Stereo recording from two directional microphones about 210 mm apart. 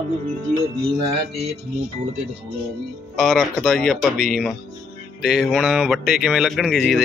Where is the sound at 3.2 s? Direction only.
Centre (ahead or behind).